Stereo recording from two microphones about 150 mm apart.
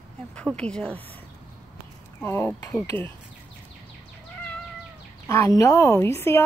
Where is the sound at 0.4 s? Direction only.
5° left (ahead or behind).